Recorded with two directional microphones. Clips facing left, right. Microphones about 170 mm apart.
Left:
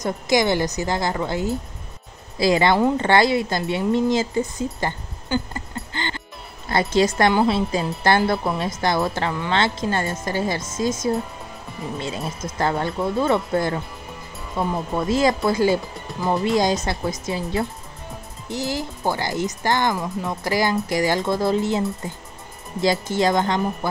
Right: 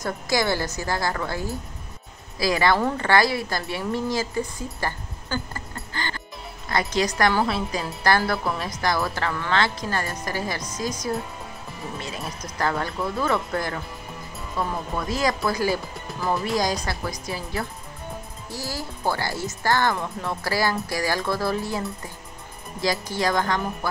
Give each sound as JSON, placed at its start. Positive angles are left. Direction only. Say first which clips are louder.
{"t": 0.0, "sound": "a woman's voice", "louder": "left 4 dB", "side_deg": 20}
{"t": 12.3, "sound": "a woman's voice", "louder": "left 2 dB", "side_deg": 25}